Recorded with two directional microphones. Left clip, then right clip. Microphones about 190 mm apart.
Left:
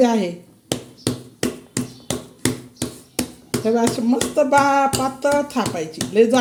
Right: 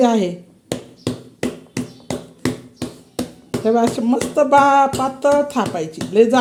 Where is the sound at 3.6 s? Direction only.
15° right (ahead or behind).